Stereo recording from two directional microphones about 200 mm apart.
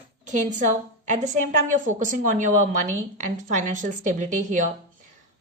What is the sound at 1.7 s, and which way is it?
A woman's voice, 40° right (ahead or behind).